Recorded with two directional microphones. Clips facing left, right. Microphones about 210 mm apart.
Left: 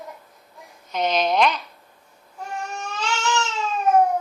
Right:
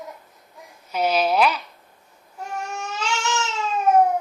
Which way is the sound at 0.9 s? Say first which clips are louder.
Right 1 dB; 5° right (ahead or behind).